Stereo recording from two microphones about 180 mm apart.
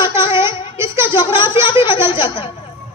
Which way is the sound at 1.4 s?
25° left (ahead or behind).